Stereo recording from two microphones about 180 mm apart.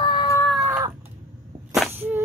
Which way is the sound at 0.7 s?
20° right (ahead or behind).